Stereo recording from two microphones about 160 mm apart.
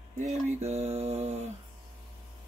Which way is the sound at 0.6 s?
40° right (ahead or behind).